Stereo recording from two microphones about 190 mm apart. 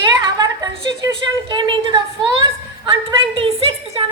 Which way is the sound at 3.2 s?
30° right (ahead or behind).